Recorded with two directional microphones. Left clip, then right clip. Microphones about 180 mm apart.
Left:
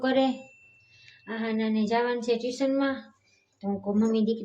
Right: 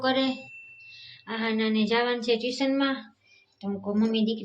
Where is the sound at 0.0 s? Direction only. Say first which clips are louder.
Left 1 dB; 60° left (ahead or behind).